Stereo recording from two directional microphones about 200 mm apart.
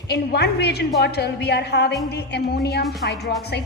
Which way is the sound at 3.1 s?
55° left (ahead or behind).